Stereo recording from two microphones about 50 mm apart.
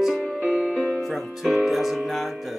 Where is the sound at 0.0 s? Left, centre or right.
Centre.